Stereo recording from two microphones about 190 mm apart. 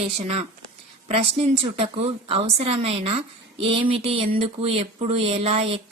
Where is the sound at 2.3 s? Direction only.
30° right (ahead or behind).